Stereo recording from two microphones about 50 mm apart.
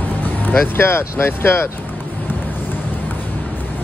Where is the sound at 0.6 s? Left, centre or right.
Left.